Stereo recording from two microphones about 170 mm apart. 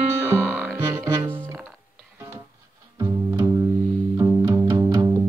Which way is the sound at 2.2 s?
15° right (ahead or behind).